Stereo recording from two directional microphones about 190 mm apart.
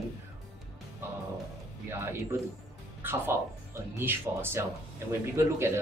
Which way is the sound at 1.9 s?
10° right (ahead or behind).